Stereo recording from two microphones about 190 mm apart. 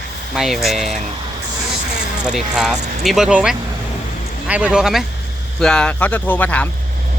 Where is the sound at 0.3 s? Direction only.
Centre (ahead or behind).